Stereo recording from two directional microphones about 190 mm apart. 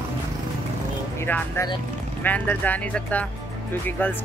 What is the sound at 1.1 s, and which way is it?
Speech, 10° left (ahead or behind).